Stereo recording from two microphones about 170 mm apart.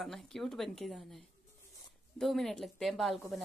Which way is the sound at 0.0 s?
Centre (ahead or behind).